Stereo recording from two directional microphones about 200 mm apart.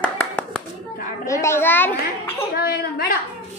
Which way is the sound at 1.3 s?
15° left (ahead or behind).